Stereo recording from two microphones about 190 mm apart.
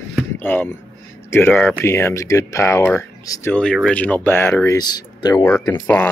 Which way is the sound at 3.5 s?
5° left (ahead or behind).